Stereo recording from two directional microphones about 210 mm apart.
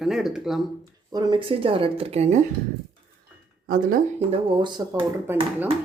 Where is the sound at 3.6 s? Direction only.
40° right (ahead or behind).